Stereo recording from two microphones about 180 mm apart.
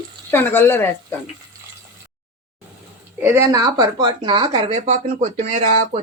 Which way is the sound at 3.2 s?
15° right (ahead or behind).